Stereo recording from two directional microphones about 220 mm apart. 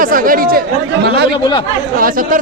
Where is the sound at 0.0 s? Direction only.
40° right (ahead or behind).